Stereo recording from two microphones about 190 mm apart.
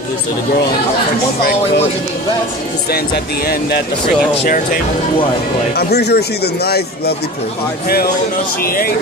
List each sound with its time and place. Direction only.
4.5 s speech: 45° left (ahead or behind)
5.8 s speech: 60° left (ahead or behind)
8.6 s speech: 50° left (ahead or behind)